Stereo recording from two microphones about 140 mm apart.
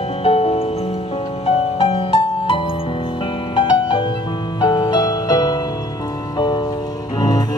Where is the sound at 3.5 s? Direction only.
35° left (ahead or behind).